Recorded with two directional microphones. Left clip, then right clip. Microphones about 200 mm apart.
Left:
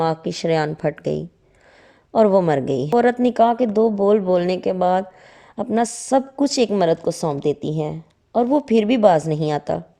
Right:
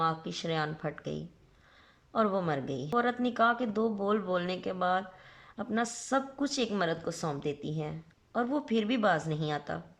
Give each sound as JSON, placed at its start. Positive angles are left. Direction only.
{"t": 0.0, "sound": "a woman's voice", "side_deg": 35}